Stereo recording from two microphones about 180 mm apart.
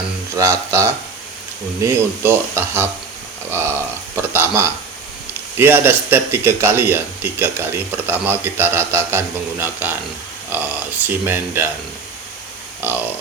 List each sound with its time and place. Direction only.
0.3 s speech: 15° right (ahead or behind)
4.1 s speech: 10° right (ahead or behind)
12.8 s speech: 10° right (ahead or behind)